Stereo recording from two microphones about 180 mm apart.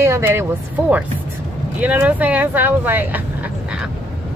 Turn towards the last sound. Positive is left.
turn(degrees=-10)  # may be behind; listen again after turning